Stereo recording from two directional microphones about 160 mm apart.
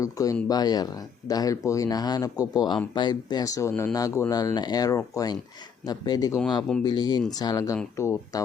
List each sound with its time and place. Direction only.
0.0 s speech: 20° left (ahead or behind)